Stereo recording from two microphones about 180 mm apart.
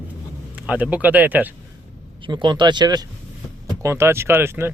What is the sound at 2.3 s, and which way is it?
Speech, 25° right (ahead or behind).